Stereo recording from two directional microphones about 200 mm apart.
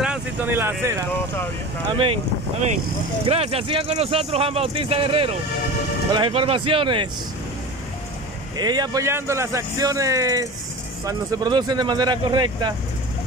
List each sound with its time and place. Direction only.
0.0 s vehicle: 5° right (ahead or behind)
1.9 s speech: 25° right (ahead or behind)
3.3 s speech: 30° right (ahead or behind)
8.5 s speech: 20° right (ahead or behind)